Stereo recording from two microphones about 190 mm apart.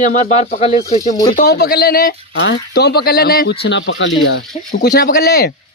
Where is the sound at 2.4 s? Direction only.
65° left (ahead or behind).